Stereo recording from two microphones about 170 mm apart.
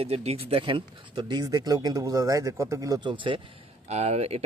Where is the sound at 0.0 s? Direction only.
35° right (ahead or behind).